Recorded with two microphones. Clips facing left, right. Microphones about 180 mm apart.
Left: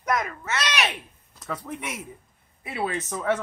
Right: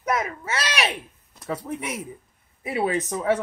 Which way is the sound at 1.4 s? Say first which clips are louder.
Right 4 dB; 30° right (ahead or behind).